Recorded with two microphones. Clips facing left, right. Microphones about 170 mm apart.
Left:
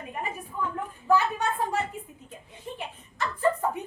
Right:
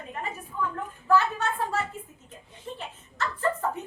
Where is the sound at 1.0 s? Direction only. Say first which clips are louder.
Even; 15° left (ahead or behind).